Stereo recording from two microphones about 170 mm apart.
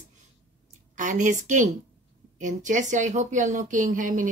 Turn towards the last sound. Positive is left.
turn(degrees=-50)  # may be behind; listen again after turning